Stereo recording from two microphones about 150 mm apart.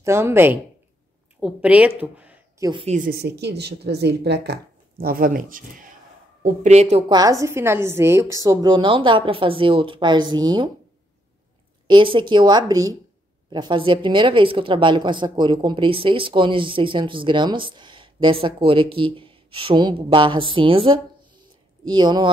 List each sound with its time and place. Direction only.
0.0 s speech: 15° right (ahead or behind)
2.8 s speech: 50° right (ahead or behind)
3.1 s speech: 90° right; by 5.9 s 65° right (ahead or behind)
6.4 s speech: 50° right (ahead or behind)
7.1 s a woman's voice: 25° right (ahead or behind)
11.9 s a woman's voice: 35° right (ahead or behind)